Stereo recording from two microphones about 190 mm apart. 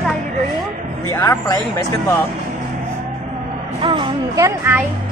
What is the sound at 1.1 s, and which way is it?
Speech, 20° left (ahead or behind).